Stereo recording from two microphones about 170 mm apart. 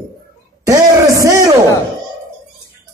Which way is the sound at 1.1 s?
20° right (ahead or behind).